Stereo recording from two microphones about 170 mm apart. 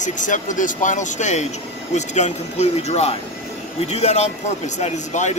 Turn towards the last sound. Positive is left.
turn(degrees=45)  # may be behind; listen again after turning